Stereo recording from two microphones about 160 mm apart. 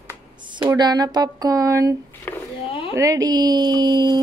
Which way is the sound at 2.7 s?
35° left (ahead or behind).